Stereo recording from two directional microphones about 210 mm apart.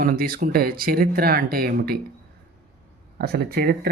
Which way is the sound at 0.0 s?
45° right (ahead or behind).